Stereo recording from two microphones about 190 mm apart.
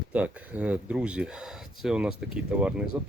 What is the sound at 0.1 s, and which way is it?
Speech, 5° right (ahead or behind).